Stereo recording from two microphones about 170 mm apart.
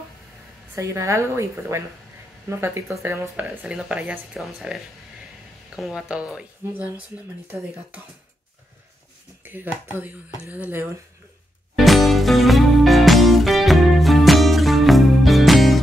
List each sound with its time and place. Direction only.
0.7 s speech: 15° right (ahead or behind)
9.4 s a sound: 10° right (ahead or behind)
10.4 s speech: 10° right (ahead or behind)
11.7 s music: centre (ahead or behind)